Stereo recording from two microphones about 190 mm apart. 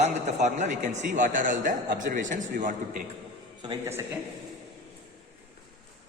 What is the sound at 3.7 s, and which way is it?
Speech, 15° right (ahead or behind).